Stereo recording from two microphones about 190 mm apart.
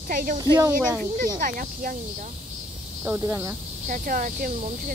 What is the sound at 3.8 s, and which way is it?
Speech, 45° right (ahead or behind).